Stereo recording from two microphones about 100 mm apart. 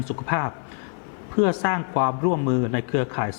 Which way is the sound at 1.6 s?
20° left (ahead or behind).